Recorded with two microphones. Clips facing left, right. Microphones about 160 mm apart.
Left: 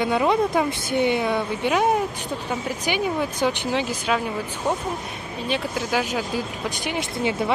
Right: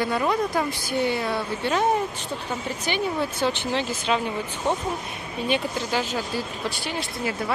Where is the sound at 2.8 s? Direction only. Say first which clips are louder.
Left 1 dB; 15° left (ahead or behind).